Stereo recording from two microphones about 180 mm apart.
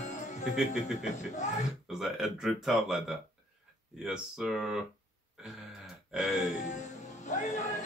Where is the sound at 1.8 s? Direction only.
Centre (ahead or behind).